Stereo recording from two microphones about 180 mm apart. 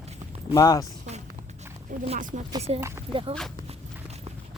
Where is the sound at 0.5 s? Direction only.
20° left (ahead or behind).